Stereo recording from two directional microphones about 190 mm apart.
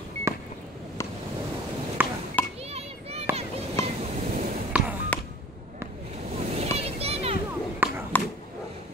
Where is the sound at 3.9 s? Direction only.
35° right (ahead or behind).